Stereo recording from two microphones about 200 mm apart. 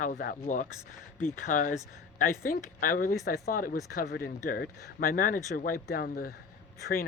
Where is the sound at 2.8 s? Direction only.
45° left (ahead or behind).